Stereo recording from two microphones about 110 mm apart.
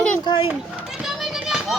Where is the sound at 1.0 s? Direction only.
5° right (ahead or behind).